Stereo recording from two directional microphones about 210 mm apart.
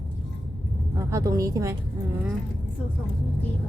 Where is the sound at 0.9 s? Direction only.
15° right (ahead or behind).